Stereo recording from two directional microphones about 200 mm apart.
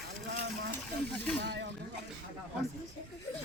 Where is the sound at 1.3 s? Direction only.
55° right (ahead or behind).